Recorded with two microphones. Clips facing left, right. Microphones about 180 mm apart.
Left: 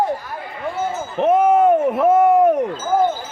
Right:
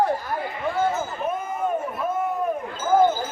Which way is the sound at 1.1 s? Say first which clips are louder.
Left 13 dB; 90° left.